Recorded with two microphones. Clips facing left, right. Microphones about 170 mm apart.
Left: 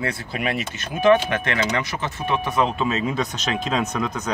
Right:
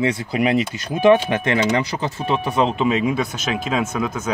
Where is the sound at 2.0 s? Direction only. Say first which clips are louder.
Right 3 dB; 30° right (ahead or behind).